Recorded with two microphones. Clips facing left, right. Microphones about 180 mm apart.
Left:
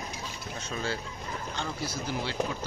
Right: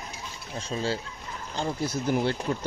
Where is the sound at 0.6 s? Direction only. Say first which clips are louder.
Right 5 dB; 30° right (ahead or behind).